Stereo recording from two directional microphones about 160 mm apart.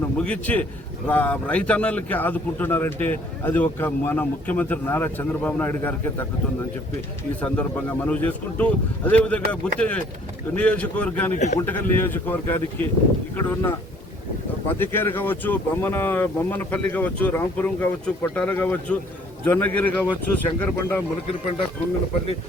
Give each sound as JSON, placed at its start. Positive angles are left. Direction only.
{"t": 0.2, "sound": "speech", "side_deg": 10}
{"t": 7.4, "sound": "speech", "side_deg": 10}
{"t": 11.3, "sound": "a man's voice", "side_deg": 45}
{"t": 11.6, "sound": "speech", "side_deg": 10}